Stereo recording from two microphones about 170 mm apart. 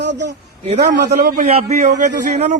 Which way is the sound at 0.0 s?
90° right.